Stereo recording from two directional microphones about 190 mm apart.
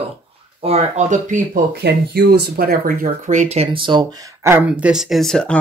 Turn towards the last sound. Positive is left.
turn(degrees=0)  # may be behind; listen again after turning